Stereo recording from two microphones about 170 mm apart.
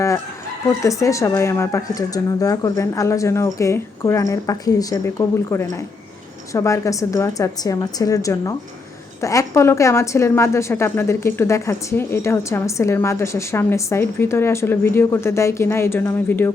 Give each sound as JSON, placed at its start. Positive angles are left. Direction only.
{"t": 0.8, "sound": "a woman's voice", "side_deg": 20}